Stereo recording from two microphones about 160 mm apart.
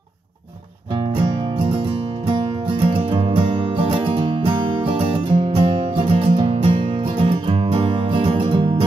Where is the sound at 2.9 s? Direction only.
35° right (ahead or behind).